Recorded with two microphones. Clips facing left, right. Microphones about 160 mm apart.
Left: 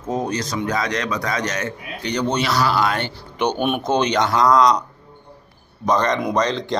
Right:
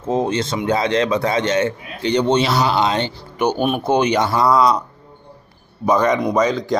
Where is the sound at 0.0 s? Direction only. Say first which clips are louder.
Right 4 dB; 25° right (ahead or behind).